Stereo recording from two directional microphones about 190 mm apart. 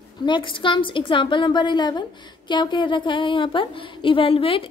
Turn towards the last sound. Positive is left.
turn(degrees=30)  # may be behind; listen again after turning